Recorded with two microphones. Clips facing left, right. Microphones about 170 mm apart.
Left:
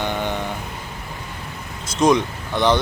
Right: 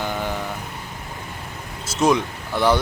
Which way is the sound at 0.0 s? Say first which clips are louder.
Left 2 dB; 5° right (ahead or behind).